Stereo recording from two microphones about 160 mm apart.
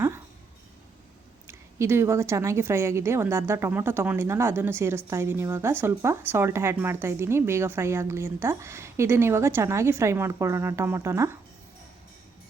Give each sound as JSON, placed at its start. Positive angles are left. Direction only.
{"t": 1.5, "sound": "a woman's voice", "side_deg": -15}